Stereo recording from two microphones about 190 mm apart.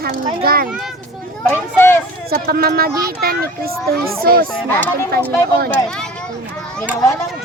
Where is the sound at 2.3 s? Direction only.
50° right (ahead or behind).